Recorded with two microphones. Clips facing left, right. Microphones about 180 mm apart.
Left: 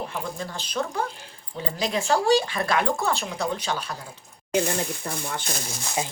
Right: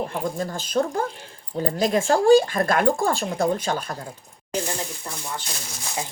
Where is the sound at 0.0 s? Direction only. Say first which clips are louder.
Right 5 dB; 45° right (ahead or behind).